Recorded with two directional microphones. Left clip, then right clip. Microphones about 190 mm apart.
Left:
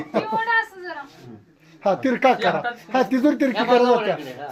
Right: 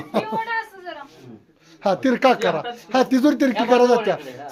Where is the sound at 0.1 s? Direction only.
20° right (ahead or behind).